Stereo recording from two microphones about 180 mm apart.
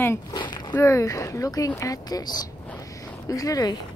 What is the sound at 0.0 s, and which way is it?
Speech, 15° left (ahead or behind).